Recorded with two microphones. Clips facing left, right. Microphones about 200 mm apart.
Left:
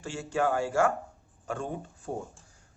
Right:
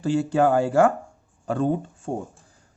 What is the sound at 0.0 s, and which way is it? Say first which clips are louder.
Speech: right 9 dB; 35° right (ahead or behind).